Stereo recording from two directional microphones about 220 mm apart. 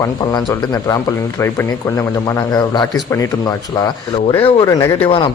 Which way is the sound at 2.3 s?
20° left (ahead or behind).